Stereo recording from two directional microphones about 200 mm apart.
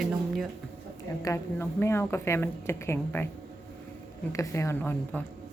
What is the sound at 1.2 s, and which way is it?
Speech, 15° left (ahead or behind).